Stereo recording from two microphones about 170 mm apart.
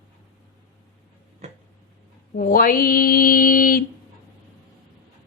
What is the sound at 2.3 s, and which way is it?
Mantra, 55° left (ahead or behind).